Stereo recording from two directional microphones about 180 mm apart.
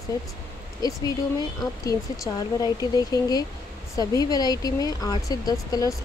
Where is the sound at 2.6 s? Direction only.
20° left (ahead or behind).